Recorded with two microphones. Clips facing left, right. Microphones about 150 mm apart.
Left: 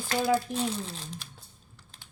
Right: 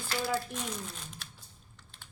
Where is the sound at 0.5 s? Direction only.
30° left (ahead or behind).